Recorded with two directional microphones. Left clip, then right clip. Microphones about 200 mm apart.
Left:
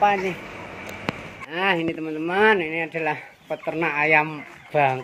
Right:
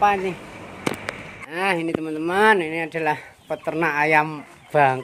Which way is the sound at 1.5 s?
10° right (ahead or behind).